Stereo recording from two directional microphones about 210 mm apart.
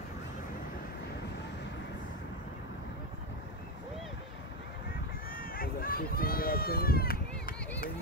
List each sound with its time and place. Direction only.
5.3 s run: 45° left (ahead or behind)